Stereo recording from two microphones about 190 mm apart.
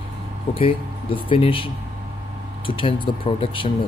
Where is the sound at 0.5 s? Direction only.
30° left (ahead or behind).